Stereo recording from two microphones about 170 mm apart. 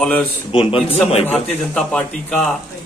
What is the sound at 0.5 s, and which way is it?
Speech, 30° left (ahead or behind).